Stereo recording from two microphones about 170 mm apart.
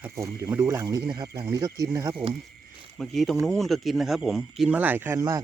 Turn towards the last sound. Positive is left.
turn(degrees=-15)  # may be behind; listen again after turning